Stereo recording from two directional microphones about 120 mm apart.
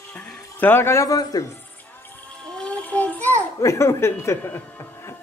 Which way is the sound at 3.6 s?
25° left (ahead or behind).